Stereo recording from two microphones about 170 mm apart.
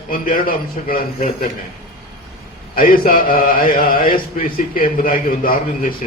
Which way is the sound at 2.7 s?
55° left (ahead or behind).